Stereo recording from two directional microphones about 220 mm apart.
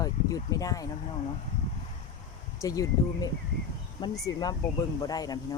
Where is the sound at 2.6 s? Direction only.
15° left (ahead or behind).